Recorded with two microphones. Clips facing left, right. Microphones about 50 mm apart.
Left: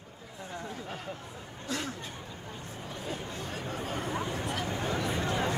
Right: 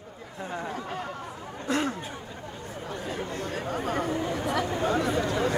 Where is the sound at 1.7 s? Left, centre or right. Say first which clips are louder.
Right 8 dB; right.